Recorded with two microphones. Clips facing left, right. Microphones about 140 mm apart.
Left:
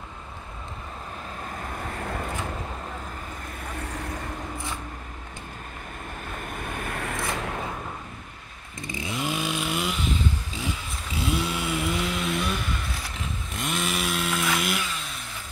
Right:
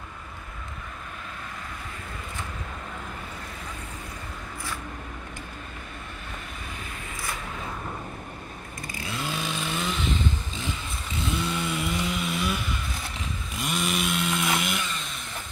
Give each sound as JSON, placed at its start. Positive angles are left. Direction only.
{"t": 1.6, "sound": "vehicle", "side_deg": 50}
{"t": 6.5, "sound": "vehicle", "side_deg": 55}
{"t": 8.8, "sound": "chainsaw", "side_deg": 20}
{"t": 13.5, "sound": "chainsaw", "side_deg": 0}